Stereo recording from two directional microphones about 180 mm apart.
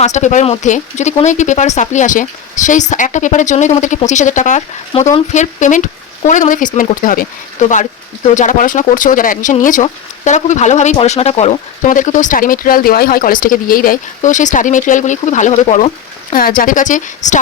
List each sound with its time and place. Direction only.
0.0 s speech: 40° left (ahead or behind)
16.3 s speech: 50° left (ahead or behind)